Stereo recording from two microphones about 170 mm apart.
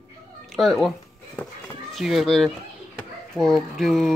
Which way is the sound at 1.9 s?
Centre (ahead or behind).